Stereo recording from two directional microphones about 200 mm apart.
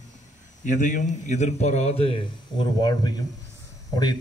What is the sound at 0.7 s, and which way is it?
A man's voice, 40° left (ahead or behind).